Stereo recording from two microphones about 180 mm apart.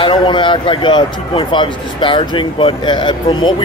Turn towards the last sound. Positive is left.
turn(degrees=25)  # may be behind; listen again after turning